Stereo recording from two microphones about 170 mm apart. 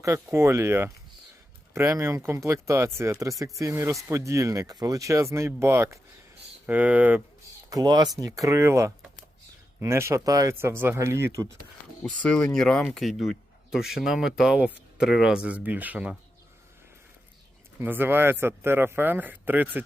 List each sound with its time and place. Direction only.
0.0 s speech: 15° right (ahead or behind)
7.7 s speech: 25° right (ahead or behind)
12.0 s speech: 5° left (ahead or behind)
17.7 s speech: 10° right (ahead or behind)